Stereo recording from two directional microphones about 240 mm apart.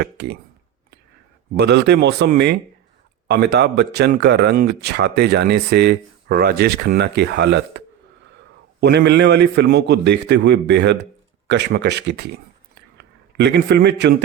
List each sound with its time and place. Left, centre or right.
0.0 s speech: right
1.5 s speech: right
8.8 s a man's voice: right